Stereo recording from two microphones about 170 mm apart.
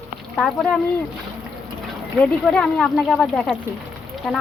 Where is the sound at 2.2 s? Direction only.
5° left (ahead or behind).